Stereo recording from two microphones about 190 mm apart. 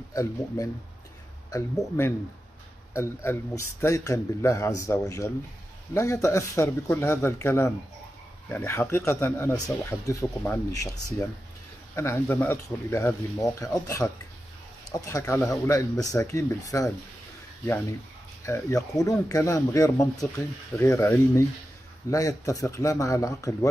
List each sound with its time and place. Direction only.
0.1 s speech: 20° left (ahead or behind)
18.4 s speech: 15° left (ahead or behind)